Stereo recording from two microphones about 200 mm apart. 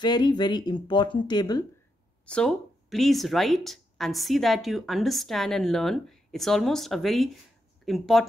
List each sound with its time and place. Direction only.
0.0 s speech: 20° left (ahead or behind)
2.2 s speech: 5° left (ahead or behind)